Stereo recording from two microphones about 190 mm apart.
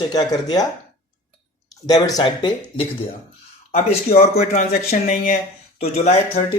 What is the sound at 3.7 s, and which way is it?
Speech, 35° left (ahead or behind).